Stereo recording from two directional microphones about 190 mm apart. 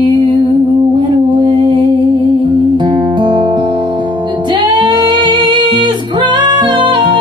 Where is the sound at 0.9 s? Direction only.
25° right (ahead or behind).